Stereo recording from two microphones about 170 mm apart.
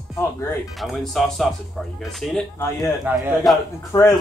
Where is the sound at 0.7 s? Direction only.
Centre (ahead or behind).